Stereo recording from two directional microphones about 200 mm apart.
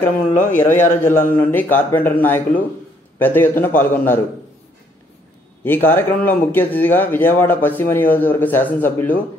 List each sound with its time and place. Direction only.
0.4 s a man's voice: 40° left (ahead or behind)
0.7 s speech: 10° left (ahead or behind)
5.6 s speech: 10° left (ahead or behind)